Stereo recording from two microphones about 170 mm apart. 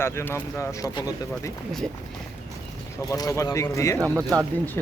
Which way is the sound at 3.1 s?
20° left (ahead or behind).